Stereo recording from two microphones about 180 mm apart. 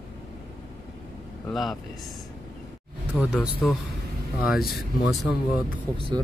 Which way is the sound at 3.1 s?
5° right (ahead or behind).